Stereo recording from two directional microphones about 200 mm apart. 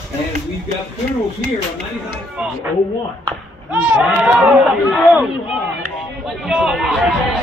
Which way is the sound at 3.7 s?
5° right (ahead or behind).